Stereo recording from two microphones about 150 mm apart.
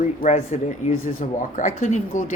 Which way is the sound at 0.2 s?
45° left (ahead or behind).